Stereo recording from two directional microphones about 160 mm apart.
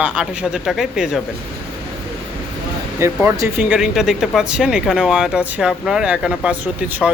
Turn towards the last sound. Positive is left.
turn(degrees=0)  # may be behind; listen again after turning